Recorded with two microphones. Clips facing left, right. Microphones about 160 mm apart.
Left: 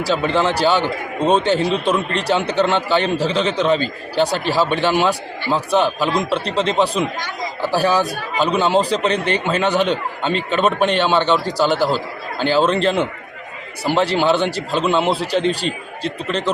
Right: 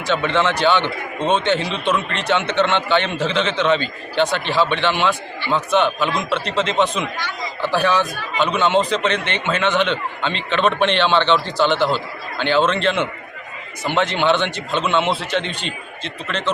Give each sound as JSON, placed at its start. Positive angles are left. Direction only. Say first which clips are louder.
{"t": 0.0, "sound": "a man's voice", "louder": "left 1 dB", "side_deg": 35}